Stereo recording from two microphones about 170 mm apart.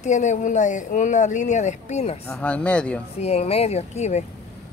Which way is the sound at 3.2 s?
40° left (ahead or behind).